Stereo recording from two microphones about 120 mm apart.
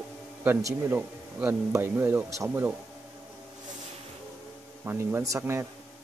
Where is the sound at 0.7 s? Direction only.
20° right (ahead or behind).